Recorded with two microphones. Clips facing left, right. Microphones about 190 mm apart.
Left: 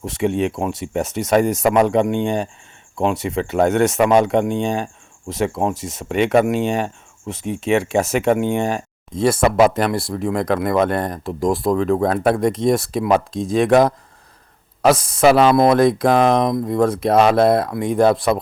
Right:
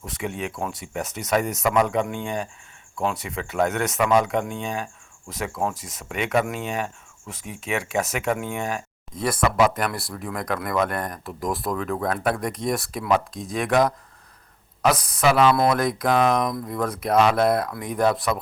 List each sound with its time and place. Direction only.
0.0 s speech: 25° left (ahead or behind)
15.7 s speech: 30° left (ahead or behind)